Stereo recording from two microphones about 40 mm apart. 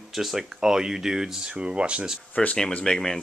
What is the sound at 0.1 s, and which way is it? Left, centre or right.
Speech, centre.